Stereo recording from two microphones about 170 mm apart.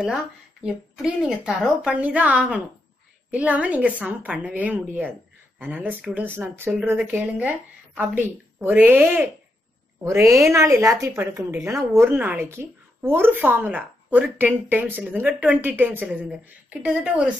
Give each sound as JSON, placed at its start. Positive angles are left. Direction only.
{"t": 0.7, "sound": "a woman's voice", "side_deg": -5}